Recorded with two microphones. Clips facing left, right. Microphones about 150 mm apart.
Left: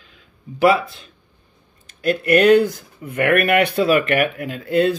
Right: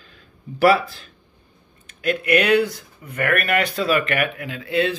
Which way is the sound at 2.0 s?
45° left (ahead or behind).